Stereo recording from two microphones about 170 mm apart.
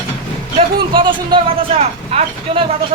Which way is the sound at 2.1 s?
40° right (ahead or behind).